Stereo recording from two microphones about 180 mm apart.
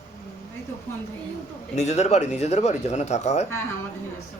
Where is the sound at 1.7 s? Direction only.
40° left (ahead or behind).